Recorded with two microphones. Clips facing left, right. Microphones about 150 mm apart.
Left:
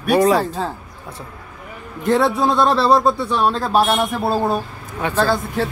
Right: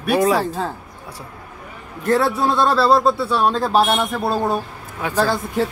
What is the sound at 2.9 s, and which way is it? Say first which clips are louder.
Speech: even; centre (ahead or behind).